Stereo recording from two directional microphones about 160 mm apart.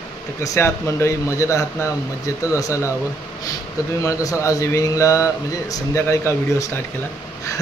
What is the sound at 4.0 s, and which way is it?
Speech, 20° left (ahead or behind).